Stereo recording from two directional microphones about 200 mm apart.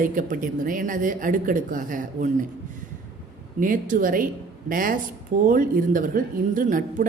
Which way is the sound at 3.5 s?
40° right (ahead or behind).